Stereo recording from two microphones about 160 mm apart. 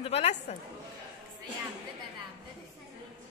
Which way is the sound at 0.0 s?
40° left (ahead or behind).